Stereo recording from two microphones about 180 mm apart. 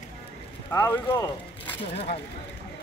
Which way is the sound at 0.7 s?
15° left (ahead or behind).